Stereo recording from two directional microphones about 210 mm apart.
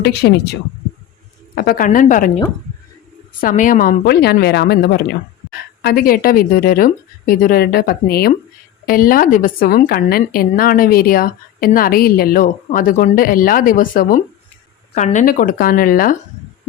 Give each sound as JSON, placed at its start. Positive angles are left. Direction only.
{"t": 0.0, "sound": "a woman's voice", "side_deg": 50}
{"t": 1.5, "sound": "speech", "side_deg": 40}
{"t": 3.4, "sound": "a woman's voice", "side_deg": 40}